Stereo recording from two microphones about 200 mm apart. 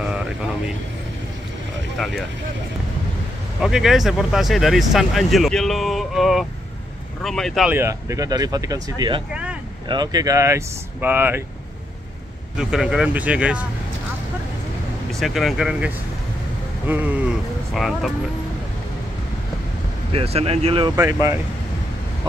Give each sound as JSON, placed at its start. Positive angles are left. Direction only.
{"t": 0.0, "sound": "vehicle", "side_deg": -5}
{"t": 2.0, "sound": "speech", "side_deg": 0}
{"t": 3.6, "sound": "speech", "side_deg": 0}
{"t": 7.7, "sound": "speech", "side_deg": -15}
{"t": 9.3, "sound": "vehicle", "side_deg": -5}
{"t": 9.8, "sound": "speech", "side_deg": -20}
{"t": 12.5, "sound": "speech", "side_deg": -5}
{"t": 15.1, "sound": "speech", "side_deg": 0}
{"t": 20.1, "sound": "speech", "side_deg": -30}